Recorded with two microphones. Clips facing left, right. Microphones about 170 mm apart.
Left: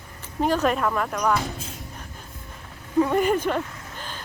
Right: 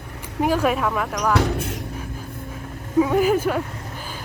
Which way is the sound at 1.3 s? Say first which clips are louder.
Right 7 dB; 75° right (ahead or behind).